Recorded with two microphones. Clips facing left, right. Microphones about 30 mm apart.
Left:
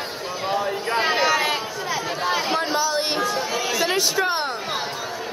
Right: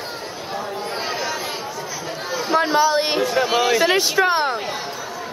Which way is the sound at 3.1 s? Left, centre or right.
Right.